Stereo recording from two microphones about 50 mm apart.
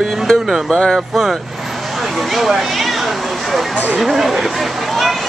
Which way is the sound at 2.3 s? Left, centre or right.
Centre.